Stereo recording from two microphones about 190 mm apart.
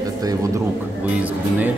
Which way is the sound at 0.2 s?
20° right (ahead or behind).